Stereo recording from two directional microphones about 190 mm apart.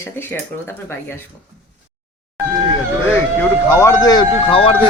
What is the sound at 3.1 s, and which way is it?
Speech, 15° left (ahead or behind).